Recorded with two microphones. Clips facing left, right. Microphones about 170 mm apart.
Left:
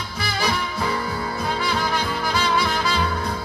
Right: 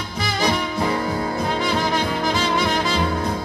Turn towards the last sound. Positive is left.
turn(degrees=-20)  # may be behind; listen again after turning